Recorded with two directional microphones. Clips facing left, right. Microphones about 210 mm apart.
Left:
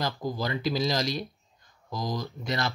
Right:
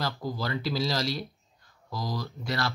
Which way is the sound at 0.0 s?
20° left (ahead or behind).